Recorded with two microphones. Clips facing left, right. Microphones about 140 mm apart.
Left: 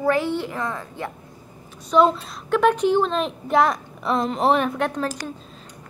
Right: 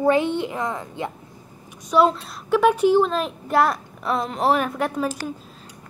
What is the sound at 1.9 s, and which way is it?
A woman's voice, centre (ahead or behind).